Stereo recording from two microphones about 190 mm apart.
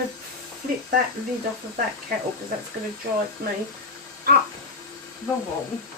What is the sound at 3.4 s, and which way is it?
A woman's voice, 55° right (ahead or behind).